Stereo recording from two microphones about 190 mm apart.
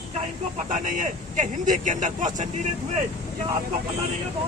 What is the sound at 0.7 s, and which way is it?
Speech, 40° right (ahead or behind).